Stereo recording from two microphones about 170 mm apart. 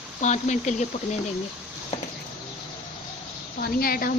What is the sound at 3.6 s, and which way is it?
Speech, 60° left (ahead or behind).